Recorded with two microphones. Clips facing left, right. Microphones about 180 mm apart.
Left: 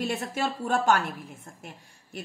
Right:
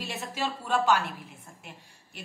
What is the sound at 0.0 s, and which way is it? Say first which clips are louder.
A woman's voice: left 4 dB; 50° left (ahead or behind).